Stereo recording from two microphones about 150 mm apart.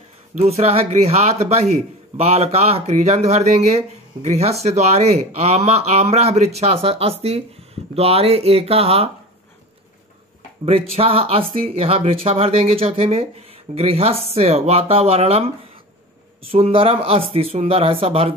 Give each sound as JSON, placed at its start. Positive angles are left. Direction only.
{"t": 0.3, "sound": "a man's voice", "side_deg": -45}
{"t": 10.6, "sound": "speech", "side_deg": -40}
{"t": 16.4, "sound": "speech", "side_deg": -40}